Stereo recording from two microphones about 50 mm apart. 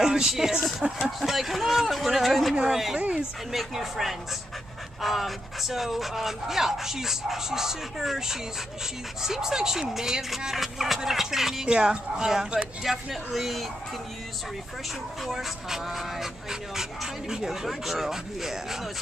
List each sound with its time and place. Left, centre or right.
0.0 s a man's voice: centre
3.5 s a man's voice: centre
12.8 s a man's voice: centre
15.2 s speech: centre